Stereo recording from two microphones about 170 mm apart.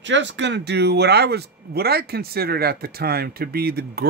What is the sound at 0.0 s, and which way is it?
Speech, 90° right.